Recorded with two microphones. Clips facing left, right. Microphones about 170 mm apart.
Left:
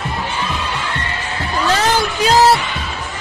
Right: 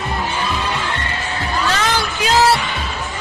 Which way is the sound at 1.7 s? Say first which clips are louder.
Left 6 dB; 35° left (ahead or behind).